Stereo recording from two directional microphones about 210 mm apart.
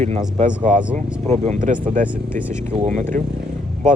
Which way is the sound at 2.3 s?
10° left (ahead or behind).